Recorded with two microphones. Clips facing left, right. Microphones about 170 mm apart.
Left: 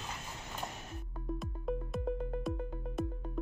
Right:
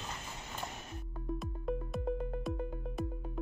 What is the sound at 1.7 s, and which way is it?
Music, centre (ahead or behind).